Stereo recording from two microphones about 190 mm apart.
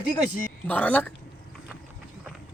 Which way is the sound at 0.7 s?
10° left (ahead or behind).